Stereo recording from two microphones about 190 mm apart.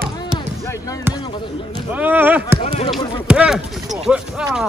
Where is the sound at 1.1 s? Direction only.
25° left (ahead or behind).